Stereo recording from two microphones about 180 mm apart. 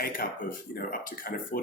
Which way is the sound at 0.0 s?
55° left (ahead or behind).